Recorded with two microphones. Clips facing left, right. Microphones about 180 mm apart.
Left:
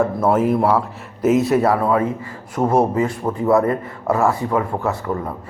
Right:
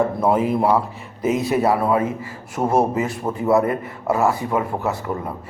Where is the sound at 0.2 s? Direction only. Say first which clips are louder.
Left 2 dB; centre (ahead or behind).